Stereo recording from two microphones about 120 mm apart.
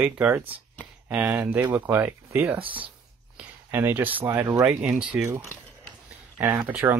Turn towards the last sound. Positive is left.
turn(degrees=-20)  # may be behind; listen again after turning